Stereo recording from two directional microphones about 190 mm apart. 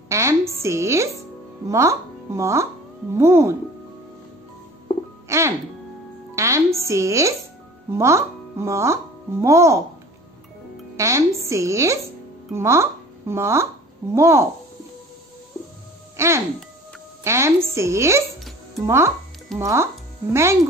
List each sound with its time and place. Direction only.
0.1 s a sound: 15° right (ahead or behind)
1.7 s speech: 15° right (ahead or behind)
5.3 s music: 15° right (ahead or behind)
6.8 s speech: 15° right (ahead or behind)
11.0 s speech: 15° right (ahead or behind)
16.2 s a woman's voice: 15° right (ahead or behind)